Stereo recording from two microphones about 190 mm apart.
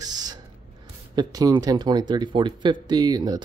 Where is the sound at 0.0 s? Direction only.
20° right (ahead or behind).